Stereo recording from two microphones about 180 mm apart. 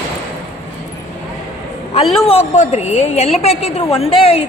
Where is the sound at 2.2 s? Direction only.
35° left (ahead or behind).